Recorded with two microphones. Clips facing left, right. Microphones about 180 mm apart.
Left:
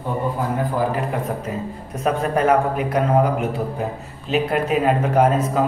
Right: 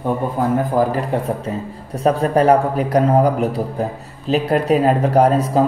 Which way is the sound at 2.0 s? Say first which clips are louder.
Right 5 dB; 35° right (ahead or behind).